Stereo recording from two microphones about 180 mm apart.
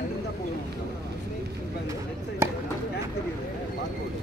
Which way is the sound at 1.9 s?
15° right (ahead or behind).